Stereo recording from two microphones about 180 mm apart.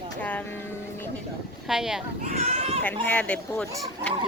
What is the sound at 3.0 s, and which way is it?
Speech, 10° left (ahead or behind).